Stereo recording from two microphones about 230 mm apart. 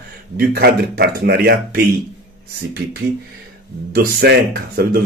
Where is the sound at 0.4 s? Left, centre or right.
Right.